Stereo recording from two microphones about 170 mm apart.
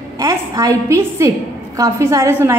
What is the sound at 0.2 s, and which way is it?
A woman's voice, 15° right (ahead or behind).